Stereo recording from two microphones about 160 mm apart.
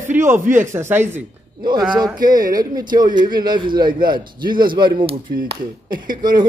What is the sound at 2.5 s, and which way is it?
A man's voice, 25° right (ahead or behind).